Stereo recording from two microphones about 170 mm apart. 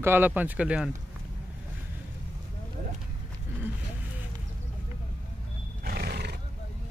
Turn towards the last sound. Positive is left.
turn(degrees=-70)  # may be behind; listen again after turning